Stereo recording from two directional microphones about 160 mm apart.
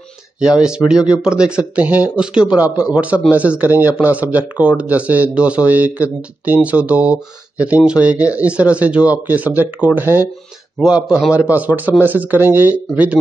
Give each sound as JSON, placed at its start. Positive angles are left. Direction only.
{"t": 0.4, "sound": "speech", "side_deg": -5}